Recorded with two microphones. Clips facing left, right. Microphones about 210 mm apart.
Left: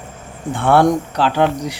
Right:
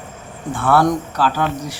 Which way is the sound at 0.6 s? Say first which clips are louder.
Left 3 dB; 25° left (ahead or behind).